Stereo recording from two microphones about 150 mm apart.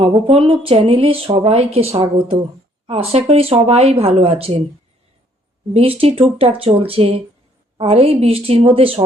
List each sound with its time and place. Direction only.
0.0 s speech: 40° right (ahead or behind)
5.7 s speech: 40° right (ahead or behind)